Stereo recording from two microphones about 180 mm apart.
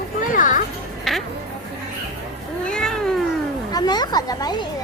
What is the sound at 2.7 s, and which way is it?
Cat, 5° left (ahead or behind).